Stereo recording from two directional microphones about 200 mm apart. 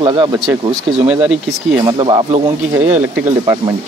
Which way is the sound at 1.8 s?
20° right (ahead or behind).